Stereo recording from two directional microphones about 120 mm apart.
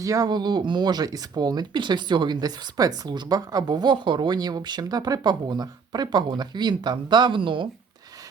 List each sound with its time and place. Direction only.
0.0 s speech: 30° right (ahead or behind)